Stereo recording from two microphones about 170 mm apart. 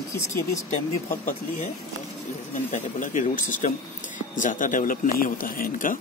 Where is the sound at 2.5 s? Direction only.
50° left (ahead or behind).